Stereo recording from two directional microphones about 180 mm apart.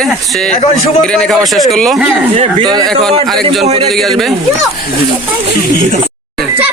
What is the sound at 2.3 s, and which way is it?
Speech, 35° right (ahead or behind).